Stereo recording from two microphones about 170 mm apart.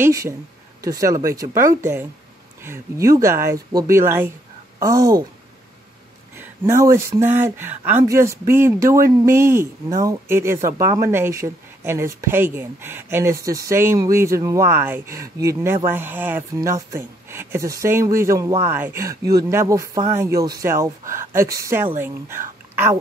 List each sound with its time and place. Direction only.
0.0 s speech: 20° right (ahead or behind)
6.3 s a woman's voice: 15° right (ahead or behind)